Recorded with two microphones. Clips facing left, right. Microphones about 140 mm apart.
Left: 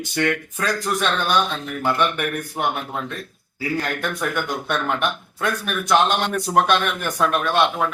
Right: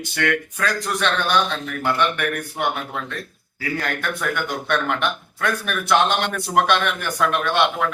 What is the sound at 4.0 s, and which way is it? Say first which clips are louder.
A man's voice: left 1 dB; 10° left (ahead or behind).